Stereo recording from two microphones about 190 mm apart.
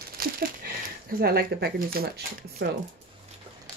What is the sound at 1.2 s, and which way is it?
Speech, 55° right (ahead or behind).